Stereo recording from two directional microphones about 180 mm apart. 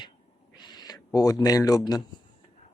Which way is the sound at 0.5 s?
25° left (ahead or behind).